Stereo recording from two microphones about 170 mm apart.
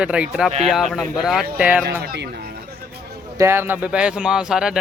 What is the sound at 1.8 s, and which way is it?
Speech, 70° right (ahead or behind).